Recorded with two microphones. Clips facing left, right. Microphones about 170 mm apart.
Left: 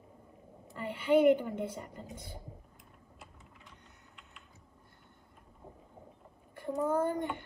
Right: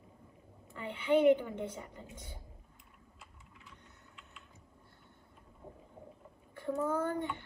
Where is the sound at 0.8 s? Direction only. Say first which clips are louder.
Left 2 dB; 10° left (ahead or behind).